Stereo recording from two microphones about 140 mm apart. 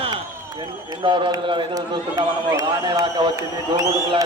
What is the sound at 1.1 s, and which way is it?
A man's voice, 35° right (ahead or behind).